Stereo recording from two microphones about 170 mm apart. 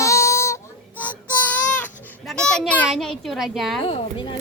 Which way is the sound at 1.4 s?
10° left (ahead or behind).